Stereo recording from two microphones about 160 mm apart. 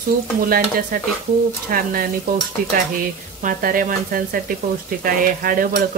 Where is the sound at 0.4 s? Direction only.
65° right (ahead or behind).